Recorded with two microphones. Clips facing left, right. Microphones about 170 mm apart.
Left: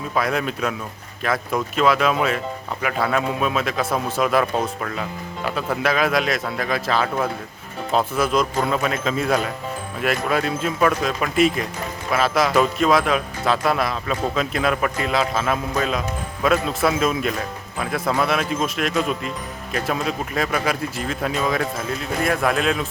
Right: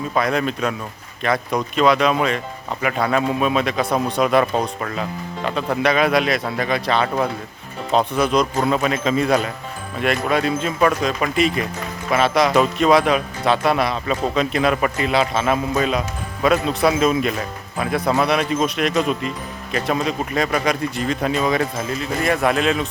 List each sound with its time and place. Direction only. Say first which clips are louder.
0.1 s a man's voice: right 2 dB; 5° left (ahead or behind)